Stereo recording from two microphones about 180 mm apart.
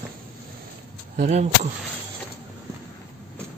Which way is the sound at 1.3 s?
40° right (ahead or behind).